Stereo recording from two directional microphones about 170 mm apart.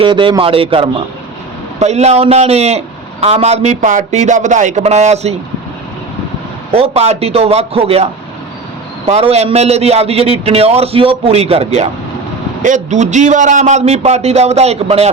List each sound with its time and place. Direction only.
0.0 s a man's voice: 30° right (ahead or behind)
6.7 s a man's voice: 35° right (ahead or behind)
9.0 s a man's voice: 40° right (ahead or behind)